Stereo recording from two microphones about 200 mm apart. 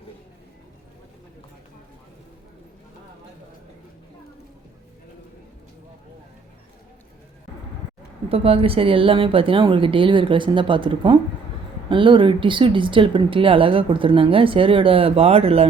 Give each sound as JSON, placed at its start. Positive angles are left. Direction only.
{"t": 8.3, "sound": "a woman's voice", "side_deg": -30}